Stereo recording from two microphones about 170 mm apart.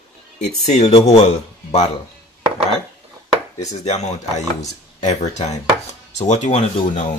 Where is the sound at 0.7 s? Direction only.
40° left (ahead or behind).